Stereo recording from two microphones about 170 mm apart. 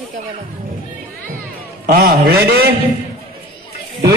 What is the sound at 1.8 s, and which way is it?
Speech, 60° right (ahead or behind).